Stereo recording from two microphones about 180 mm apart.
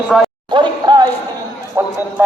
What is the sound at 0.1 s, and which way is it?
Speech, centre (ahead or behind).